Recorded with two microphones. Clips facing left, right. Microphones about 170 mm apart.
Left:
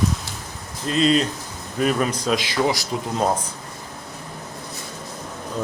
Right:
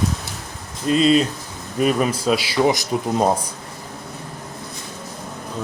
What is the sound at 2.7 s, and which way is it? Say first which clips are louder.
Speech: right 4 dB; 20° right (ahead or behind).